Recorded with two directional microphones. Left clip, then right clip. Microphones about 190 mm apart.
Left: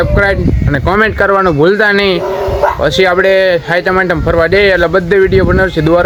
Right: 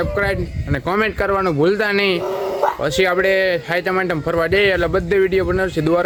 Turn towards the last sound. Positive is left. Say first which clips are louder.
# left 8 dB
turn(degrees=-5)  # may be behind; listen again after turning